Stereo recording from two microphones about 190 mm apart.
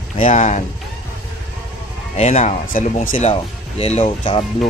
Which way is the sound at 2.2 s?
35° left (ahead or behind).